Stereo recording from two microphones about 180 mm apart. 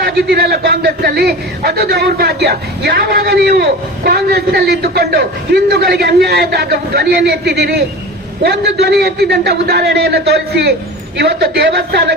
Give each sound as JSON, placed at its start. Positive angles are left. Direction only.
{"t": 0.0, "sound": "a man's voice", "side_deg": -60}